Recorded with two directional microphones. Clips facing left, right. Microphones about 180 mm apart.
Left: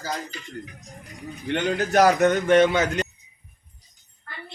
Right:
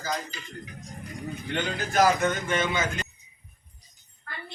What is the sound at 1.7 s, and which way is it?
Speech, 70° left (ahead or behind).